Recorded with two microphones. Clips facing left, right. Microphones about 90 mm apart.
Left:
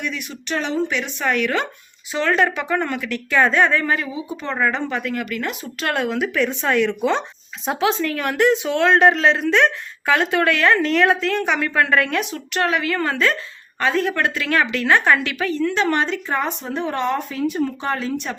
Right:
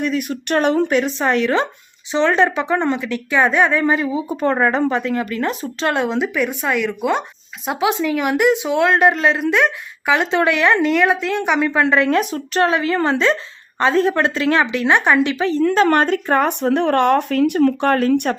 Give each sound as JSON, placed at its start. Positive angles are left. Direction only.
{"t": 0.0, "sound": "speech", "side_deg": -45}
{"t": 4.1, "sound": "speech", "side_deg": -45}
{"t": 5.9, "sound": "a woman's voice", "side_deg": -25}
{"t": 10.2, "sound": "a woman's voice", "side_deg": -20}
{"t": 10.9, "sound": "a woman's voice", "side_deg": -5}
{"t": 12.1, "sound": "speech", "side_deg": -35}
{"t": 15.6, "sound": "speech", "side_deg": -45}